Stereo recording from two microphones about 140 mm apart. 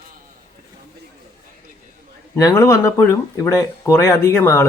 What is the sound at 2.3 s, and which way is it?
Speech, 25° left (ahead or behind).